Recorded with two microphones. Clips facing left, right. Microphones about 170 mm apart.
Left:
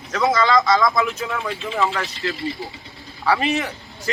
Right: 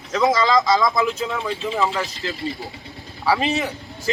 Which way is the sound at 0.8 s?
20° right (ahead or behind).